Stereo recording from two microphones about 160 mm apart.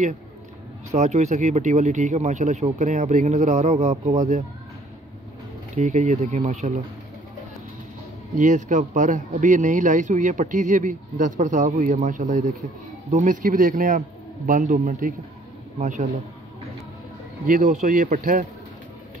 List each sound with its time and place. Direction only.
0.9 s speech: 45° right (ahead or behind)
5.8 s speech: 50° right (ahead or behind)
8.4 s a man's voice: 50° right (ahead or behind)
17.5 s a man's voice: 55° right (ahead or behind)